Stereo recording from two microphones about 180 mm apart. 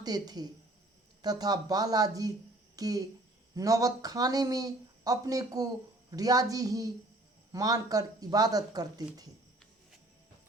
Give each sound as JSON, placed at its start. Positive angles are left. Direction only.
{"t": 0.0, "sound": "speech", "side_deg": -20}